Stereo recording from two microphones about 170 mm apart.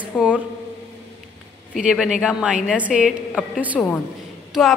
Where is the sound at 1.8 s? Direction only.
5° right (ahead or behind).